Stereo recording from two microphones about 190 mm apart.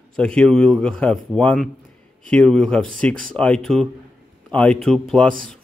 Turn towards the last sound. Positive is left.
turn(degrees=5)  # may be behind; listen again after turning